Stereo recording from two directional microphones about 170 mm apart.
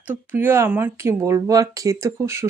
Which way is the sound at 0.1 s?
10° right (ahead or behind).